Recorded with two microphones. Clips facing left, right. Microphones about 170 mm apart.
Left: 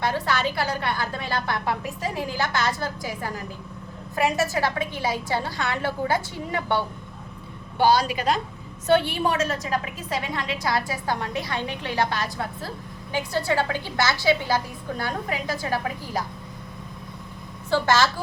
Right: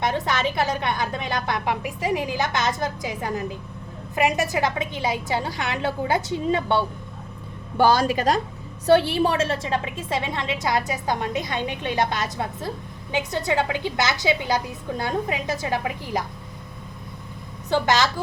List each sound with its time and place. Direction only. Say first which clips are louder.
0.0 s a woman's voice: right 1 dB; 20° right (ahead or behind)
7.8 s speech: right 2 dB; 45° right (ahead or behind)
8.9 s a woman's voice: right 3 dB; 30° right (ahead or behind)
17.7 s a woman's voice: even; 20° right (ahead or behind)